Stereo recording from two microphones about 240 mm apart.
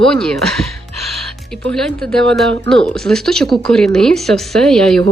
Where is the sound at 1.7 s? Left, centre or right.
Centre.